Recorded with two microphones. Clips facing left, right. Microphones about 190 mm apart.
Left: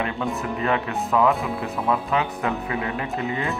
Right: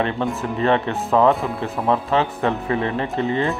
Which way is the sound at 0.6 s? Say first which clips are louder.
Right 7 dB; 30° right (ahead or behind).